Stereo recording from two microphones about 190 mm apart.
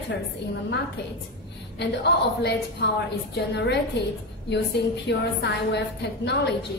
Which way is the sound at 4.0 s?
60° left (ahead or behind).